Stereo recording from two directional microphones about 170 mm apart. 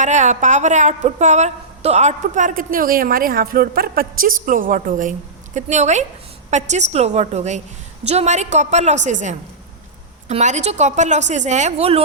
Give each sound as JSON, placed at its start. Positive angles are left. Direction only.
{"t": 0.0, "sound": "a woman's voice", "side_deg": -45}